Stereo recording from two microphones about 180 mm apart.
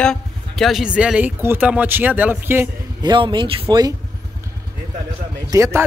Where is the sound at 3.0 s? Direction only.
25° right (ahead or behind).